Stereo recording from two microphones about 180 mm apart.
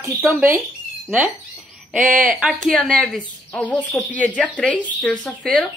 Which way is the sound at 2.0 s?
50° right (ahead or behind).